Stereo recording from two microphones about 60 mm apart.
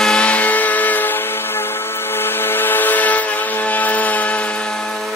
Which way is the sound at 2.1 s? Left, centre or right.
Left.